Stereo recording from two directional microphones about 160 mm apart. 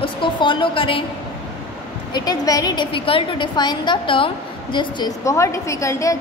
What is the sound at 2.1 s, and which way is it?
A woman's voice, 25° left (ahead or behind).